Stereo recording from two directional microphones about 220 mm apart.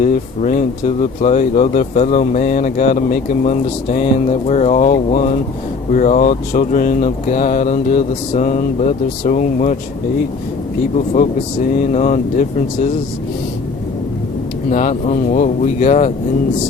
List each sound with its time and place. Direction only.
0.0 s speech: 35° left (ahead or behind)
10.9 s speech: 35° left (ahead or behind)
14.7 s speech: 35° left (ahead or behind)